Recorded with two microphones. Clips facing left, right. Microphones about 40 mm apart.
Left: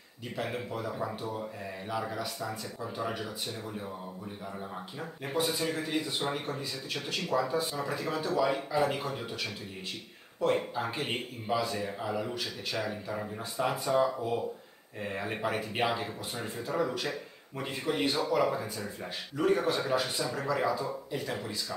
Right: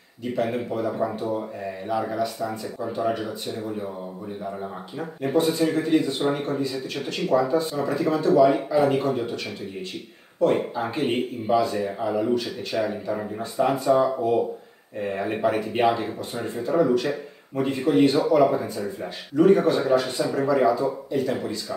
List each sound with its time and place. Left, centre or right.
0.2 s speech: centre
5.2 s speech: centre
10.4 s speech: centre